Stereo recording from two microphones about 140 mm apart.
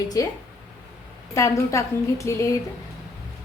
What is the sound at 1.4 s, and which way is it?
A woman's voice, 20° left (ahead or behind).